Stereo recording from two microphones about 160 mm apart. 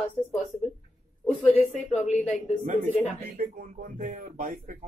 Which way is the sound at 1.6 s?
45° left (ahead or behind).